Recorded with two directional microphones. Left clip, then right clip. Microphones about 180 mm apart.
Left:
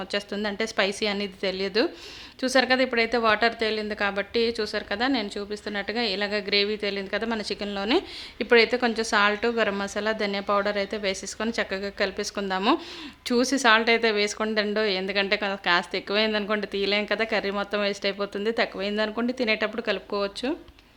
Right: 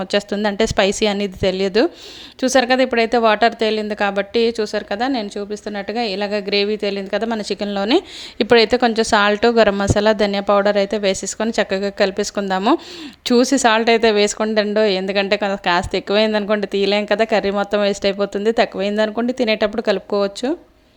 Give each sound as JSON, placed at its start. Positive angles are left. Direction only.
{"t": 0.0, "sound": "a woman's voice", "side_deg": -45}